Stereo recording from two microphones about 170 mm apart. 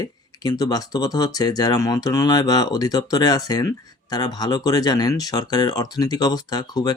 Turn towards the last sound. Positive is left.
turn(degrees=25)  # may be behind; listen again after turning